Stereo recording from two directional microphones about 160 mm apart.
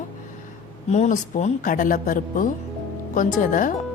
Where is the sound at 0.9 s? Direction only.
50° left (ahead or behind).